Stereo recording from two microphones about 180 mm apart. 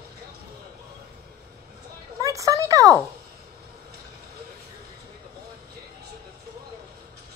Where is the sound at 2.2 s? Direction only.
15° right (ahead or behind).